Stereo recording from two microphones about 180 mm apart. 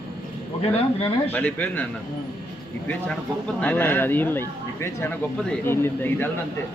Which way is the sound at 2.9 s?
5° left (ahead or behind).